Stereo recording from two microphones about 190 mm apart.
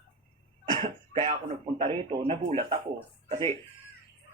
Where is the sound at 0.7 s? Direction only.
25° right (ahead or behind).